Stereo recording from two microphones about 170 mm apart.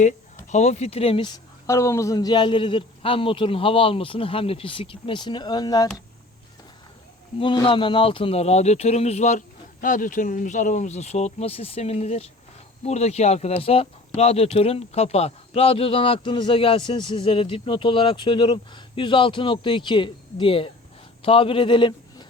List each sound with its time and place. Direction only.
0.4 s speech: 40° left (ahead or behind); by 5.9 s 25° left (ahead or behind)
7.3 s a man's voice: 30° left (ahead or behind)